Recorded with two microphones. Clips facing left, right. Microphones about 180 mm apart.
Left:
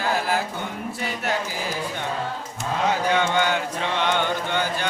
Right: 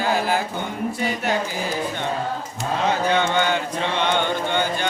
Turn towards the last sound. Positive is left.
turn(degrees=5)  # may be behind; listen again after turning